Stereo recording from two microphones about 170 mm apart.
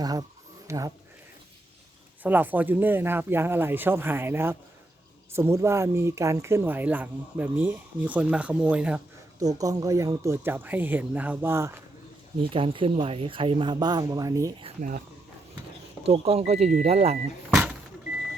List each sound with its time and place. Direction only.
0.0 s speech: 20° right (ahead or behind)
2.2 s speech: 10° right (ahead or behind)
9.6 s speech: 20° right (ahead or behind)
12.4 s speech: 30° right (ahead or behind)
14.8 s speech: 50° right (ahead or behind)
16.0 s speech: 35° right (ahead or behind)